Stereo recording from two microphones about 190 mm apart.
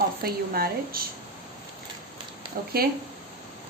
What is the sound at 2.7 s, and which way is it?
Speech, 50° right (ahead or behind).